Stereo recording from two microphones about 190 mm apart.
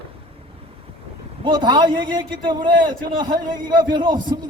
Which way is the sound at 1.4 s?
25° right (ahead or behind).